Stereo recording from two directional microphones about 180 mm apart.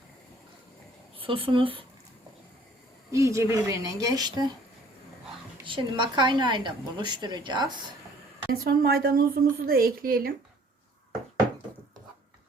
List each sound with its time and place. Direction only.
1.2 s a woman's voice: 30° right (ahead or behind)
3.1 s a woman's voice: 15° right (ahead or behind)
5.6 s a woman's voice: 25° right (ahead or behind)
8.4 s a woman's voice: 60° right (ahead or behind)